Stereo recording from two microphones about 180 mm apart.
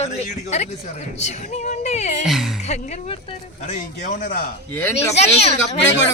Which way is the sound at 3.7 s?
45° left (ahead or behind).